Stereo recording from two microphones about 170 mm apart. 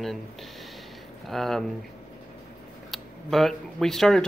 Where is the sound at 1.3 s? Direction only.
Centre (ahead or behind).